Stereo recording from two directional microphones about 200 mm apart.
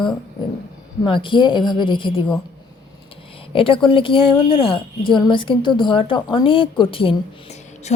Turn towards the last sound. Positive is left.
turn(degrees=30)  # may be behind; listen again after turning